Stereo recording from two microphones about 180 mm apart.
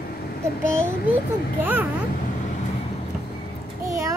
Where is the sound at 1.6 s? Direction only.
10° right (ahead or behind).